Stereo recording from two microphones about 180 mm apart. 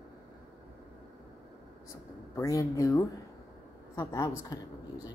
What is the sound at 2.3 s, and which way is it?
Speech, 15° left (ahead or behind).